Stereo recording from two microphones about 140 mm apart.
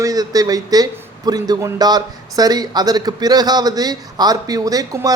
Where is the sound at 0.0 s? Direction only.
25° right (ahead or behind).